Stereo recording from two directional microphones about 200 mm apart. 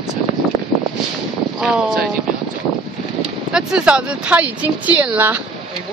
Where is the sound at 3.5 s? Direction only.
5° right (ahead or behind).